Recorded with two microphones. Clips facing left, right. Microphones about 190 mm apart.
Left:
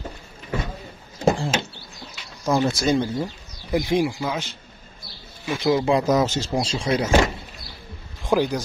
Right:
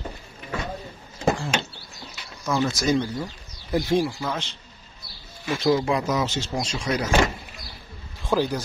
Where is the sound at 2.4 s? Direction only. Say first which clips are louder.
Left 3 dB; 35° left (ahead or behind).